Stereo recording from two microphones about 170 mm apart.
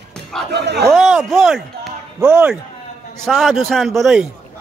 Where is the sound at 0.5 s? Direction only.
80° right.